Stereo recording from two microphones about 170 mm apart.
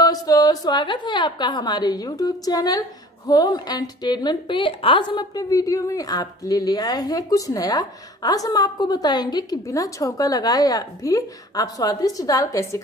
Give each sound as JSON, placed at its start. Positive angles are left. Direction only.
{"t": 0.0, "sound": "a woman's voice", "side_deg": 20}